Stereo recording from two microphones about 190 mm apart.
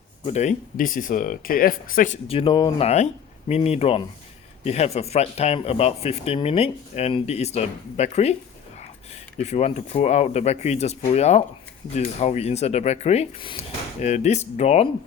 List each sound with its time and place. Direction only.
0.3 s speech: 40° left (ahead or behind)
2.2 s speech: 30° left (ahead or behind)
9.4 s speech: 35° left (ahead or behind)